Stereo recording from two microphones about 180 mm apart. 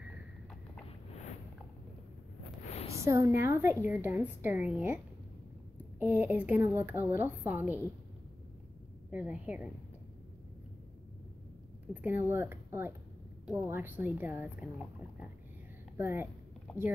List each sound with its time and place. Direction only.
2.6 s a sound: 35° left (ahead or behind)
2.9 s a woman's voice: 15° right (ahead or behind)
9.1 s a woman's voice: 10° right (ahead or behind)
11.9 s a woman's voice: 10° right (ahead or behind)
16.7 s speech: 5° left (ahead or behind)